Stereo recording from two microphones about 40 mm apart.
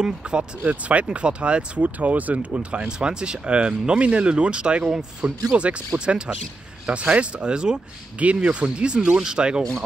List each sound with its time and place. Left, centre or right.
0.0 s speech: right
0.7 s speech: right
2.0 s speech: right
5.5 s speech: right
8.2 s speech: right
8.7 s speech: right